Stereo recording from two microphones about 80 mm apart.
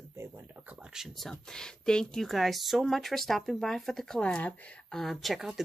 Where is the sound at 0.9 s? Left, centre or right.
Centre.